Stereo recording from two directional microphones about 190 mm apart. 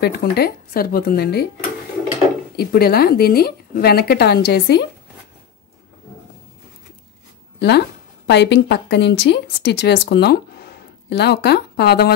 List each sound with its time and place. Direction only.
0.0 s speech: 55° left (ahead or behind)
2.5 s speech: 55° left (ahead or behind)
7.5 s speech: 65° left (ahead or behind)